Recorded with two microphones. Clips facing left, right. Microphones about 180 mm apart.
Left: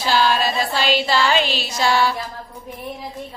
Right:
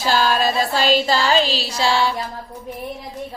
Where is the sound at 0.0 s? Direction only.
45° right (ahead or behind); by 2.1 s 25° right (ahead or behind).